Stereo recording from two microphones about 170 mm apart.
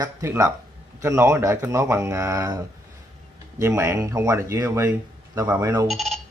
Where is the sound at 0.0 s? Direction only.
15° right (ahead or behind).